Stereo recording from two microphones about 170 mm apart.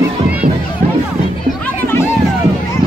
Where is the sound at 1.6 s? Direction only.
10° left (ahead or behind).